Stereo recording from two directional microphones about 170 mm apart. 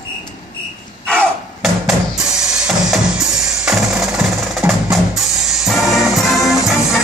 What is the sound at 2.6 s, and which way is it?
Percussion, 5° right (ahead or behind).